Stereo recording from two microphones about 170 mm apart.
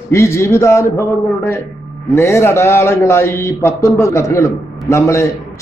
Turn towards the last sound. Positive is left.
turn(degrees=15)  # may be behind; listen again after turning